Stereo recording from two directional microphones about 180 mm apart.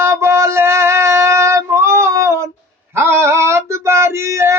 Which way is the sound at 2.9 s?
15° right (ahead or behind).